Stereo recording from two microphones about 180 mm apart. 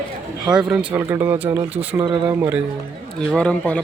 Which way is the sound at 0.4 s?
5° right (ahead or behind).